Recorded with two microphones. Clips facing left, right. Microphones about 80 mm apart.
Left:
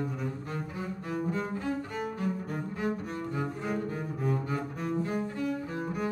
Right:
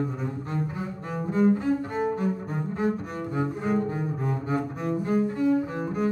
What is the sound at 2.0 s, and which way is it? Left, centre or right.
Cello, right.